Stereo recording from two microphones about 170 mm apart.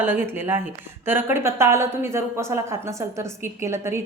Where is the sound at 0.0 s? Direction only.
15° right (ahead or behind).